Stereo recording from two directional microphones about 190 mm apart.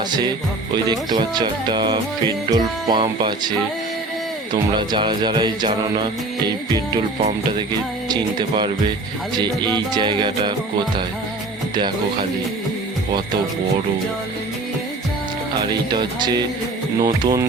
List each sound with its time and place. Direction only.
0.7 s music: 20° right (ahead or behind)
4.5 s music: 25° right (ahead or behind)
8.0 s music: 20° right (ahead or behind)
11.7 s speech: 25° right (ahead or behind)
16.0 s music: 25° right (ahead or behind)